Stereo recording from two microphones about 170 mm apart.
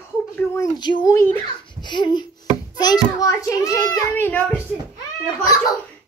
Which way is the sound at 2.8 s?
25° left (ahead or behind).